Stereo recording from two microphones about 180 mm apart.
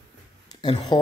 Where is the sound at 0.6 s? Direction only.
25° left (ahead or behind).